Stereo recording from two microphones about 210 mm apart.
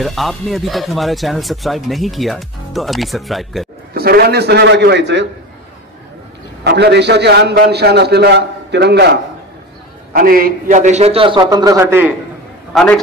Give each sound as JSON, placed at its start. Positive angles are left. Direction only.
{"t": 0.0, "sound": "speech", "side_deg": 0}
{"t": 3.9, "sound": "a man's voice", "side_deg": -45}
{"t": 6.6, "sound": "a man's voice", "side_deg": -55}
{"t": 12.7, "sound": "speech", "side_deg": 5}